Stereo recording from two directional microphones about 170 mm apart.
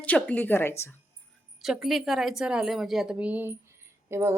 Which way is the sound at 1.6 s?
Centre (ahead or behind).